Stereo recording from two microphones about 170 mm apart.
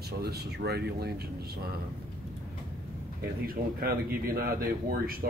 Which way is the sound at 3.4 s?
60° right (ahead or behind).